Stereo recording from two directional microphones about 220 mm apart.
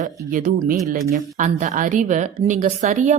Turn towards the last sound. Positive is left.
turn(degrees=-35)  # may be behind; listen again after turning